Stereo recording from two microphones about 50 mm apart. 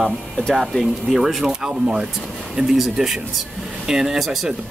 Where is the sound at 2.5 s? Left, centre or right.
Centre.